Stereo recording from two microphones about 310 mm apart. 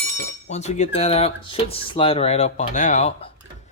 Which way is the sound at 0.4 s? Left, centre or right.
Left.